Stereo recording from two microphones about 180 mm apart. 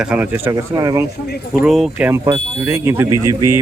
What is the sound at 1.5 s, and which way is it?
Speech, 5° right (ahead or behind).